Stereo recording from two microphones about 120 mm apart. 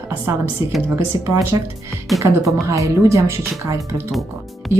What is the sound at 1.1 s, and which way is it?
Speech, 30° right (ahead or behind).